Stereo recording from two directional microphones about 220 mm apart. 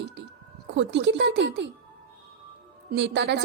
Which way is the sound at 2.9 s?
50° right (ahead or behind).